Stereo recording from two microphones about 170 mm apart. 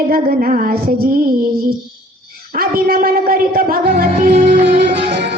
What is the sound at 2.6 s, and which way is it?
Music, 60° right (ahead or behind).